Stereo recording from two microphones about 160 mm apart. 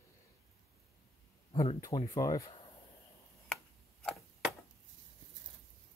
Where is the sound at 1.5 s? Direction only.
35° left (ahead or behind).